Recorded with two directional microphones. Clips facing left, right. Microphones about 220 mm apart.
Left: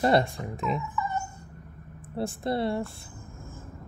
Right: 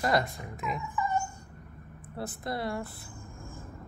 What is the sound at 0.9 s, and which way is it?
Dog, 15° right (ahead or behind).